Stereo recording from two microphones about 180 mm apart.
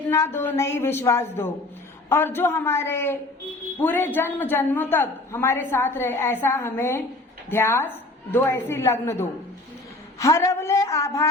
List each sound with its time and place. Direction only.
0.1 s a woman's voice: 15° left (ahead or behind)